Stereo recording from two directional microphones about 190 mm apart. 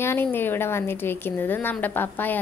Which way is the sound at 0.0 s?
10° left (ahead or behind).